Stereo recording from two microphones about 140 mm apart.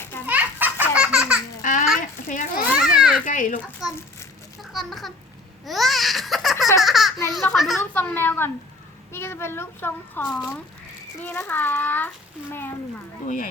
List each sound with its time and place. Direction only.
0.3 s baby laughter: 10° right (ahead or behind)
2.0 s a sound: 70° left (ahead or behind)
2.7 s children playing: 5° right (ahead or behind)
3.2 s a child's voice: 70° left (ahead or behind)
3.8 s babbling: 5° right (ahead or behind)
4.7 s a child's voice: centre (ahead or behind)
5.6 s babbling: centre (ahead or behind)
6.7 s baby laughter: centre (ahead or behind)
7.3 s babbling: centre (ahead or behind)
7.8 s a child's voice: 15° left (ahead or behind)
13.2 s a child's voice: 70° left (ahead or behind)